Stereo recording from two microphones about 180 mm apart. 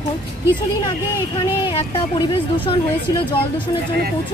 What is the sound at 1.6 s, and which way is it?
Speech, 30° left (ahead or behind).